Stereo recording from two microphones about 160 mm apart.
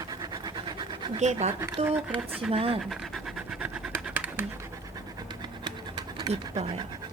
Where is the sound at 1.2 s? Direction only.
45° right (ahead or behind).